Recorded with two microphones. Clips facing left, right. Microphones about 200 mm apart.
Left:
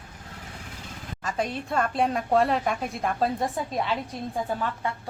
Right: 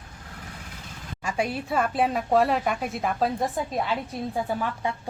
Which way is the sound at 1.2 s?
10° right (ahead or behind).